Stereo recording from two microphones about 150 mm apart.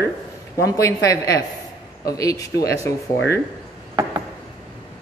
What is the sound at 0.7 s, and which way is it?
Speech, 20° left (ahead or behind).